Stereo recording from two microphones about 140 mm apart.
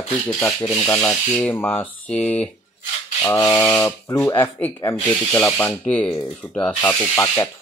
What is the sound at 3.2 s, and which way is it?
Speech, 20° left (ahead or behind).